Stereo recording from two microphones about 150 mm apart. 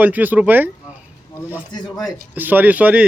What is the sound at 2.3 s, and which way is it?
Speech, 10° right (ahead or behind).